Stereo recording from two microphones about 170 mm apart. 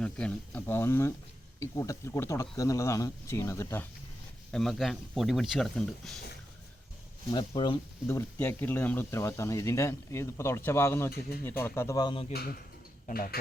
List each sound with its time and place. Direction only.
0.0 s speech: 5° left (ahead or behind)
4.5 s speech: centre (ahead or behind)
7.3 s speech: 25° left (ahead or behind)
8.0 s speech: 15° left (ahead or behind)
12.3 s speech: 65° left (ahead or behind)